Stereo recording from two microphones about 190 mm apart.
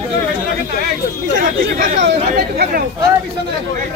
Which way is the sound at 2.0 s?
55° right (ahead or behind).